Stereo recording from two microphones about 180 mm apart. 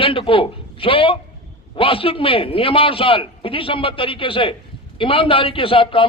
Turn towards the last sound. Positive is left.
turn(degrees=30)  # may be behind; listen again after turning